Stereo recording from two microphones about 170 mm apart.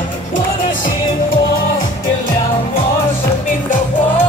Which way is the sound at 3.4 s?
50° left (ahead or behind).